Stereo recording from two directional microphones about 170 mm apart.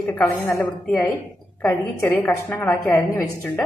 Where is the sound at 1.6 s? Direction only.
5° left (ahead or behind).